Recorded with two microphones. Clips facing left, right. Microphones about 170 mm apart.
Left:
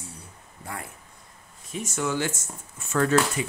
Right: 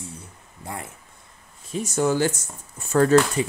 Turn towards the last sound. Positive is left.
turn(degrees=-35)  # may be behind; listen again after turning